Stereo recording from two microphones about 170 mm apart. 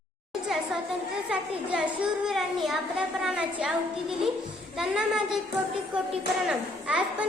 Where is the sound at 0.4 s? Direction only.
5° right (ahead or behind).